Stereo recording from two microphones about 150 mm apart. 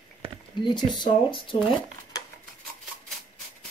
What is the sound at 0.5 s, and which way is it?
Speech, 30° left (ahead or behind).